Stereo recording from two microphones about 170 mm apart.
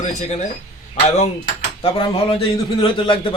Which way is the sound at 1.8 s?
35° left (ahead or behind).